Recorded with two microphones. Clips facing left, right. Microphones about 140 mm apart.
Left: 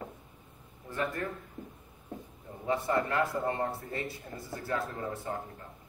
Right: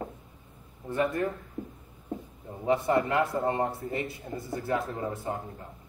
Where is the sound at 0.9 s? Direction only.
20° right (ahead or behind).